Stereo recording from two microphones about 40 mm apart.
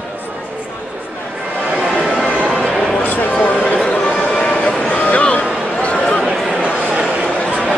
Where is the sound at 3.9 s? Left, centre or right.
Left.